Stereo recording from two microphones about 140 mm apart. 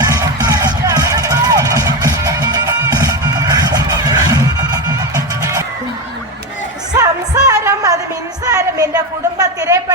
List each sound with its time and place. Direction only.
0.1 s music: 25° right (ahead or behind)
6.9 s music: 25° right (ahead or behind)
8.5 s a sound: 25° right (ahead or behind)